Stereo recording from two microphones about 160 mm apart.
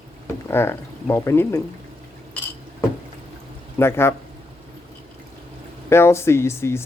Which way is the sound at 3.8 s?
15° left (ahead or behind).